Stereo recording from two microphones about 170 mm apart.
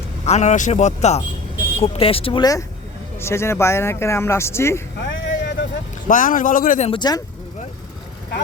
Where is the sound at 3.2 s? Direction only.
15° left (ahead or behind).